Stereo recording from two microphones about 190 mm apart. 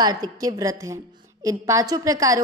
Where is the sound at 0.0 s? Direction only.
20° right (ahead or behind).